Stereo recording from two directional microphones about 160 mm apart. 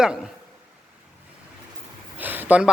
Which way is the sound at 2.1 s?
10° right (ahead or behind).